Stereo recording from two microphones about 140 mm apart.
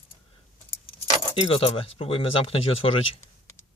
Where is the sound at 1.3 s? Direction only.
40° left (ahead or behind).